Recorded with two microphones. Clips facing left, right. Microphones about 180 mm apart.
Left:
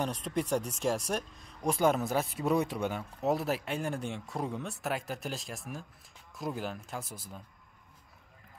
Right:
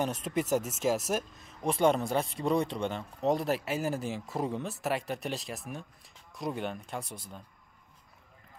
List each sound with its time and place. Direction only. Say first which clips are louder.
0.0 s speech: right 2 dB; 5° right (ahead or behind)